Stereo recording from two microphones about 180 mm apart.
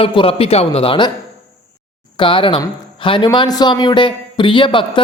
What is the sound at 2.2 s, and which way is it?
Speech, 30° left (ahead or behind).